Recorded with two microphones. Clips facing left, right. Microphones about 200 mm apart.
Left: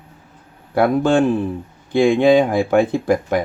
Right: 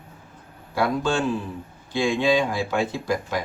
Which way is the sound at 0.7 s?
55° left (ahead or behind).